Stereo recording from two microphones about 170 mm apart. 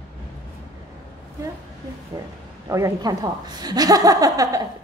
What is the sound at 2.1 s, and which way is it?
A woman's voice, 20° right (ahead or behind).